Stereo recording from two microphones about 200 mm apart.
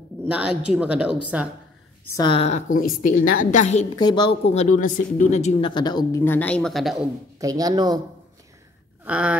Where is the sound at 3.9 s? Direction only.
20° left (ahead or behind); by 7.0 s centre (ahead or behind).